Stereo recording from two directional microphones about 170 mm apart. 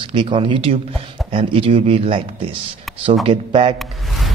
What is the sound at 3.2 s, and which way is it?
Speech, 30° right (ahead or behind).